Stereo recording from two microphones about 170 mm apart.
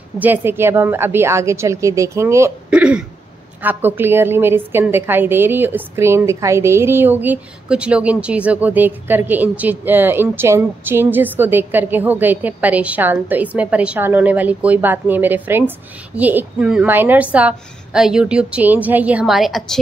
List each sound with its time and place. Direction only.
0.2 s a woman's voice: 10° right (ahead or behind)
2.8 s throat clearing: 5° right (ahead or behind)
3.6 s a woman's voice: 10° right (ahead or behind)